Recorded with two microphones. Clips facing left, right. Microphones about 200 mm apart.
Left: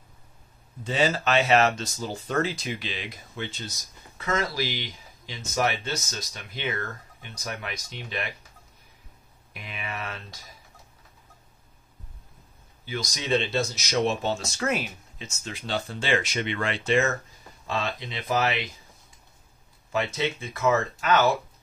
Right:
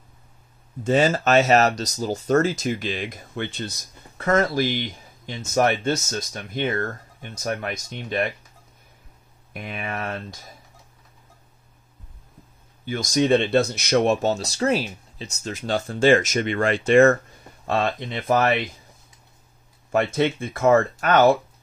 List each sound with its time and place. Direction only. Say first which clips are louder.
0.8 s speech: right 6 dB; 45° right (ahead or behind)
9.5 s speech: right 6 dB; 50° right (ahead or behind)
12.8 s speech: right 11 dB; 50° right (ahead or behind)
19.9 s speech: right 7 dB; 55° right (ahead or behind)